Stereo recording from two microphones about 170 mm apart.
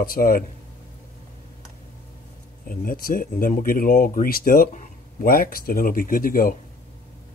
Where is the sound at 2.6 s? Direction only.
55° left (ahead or behind).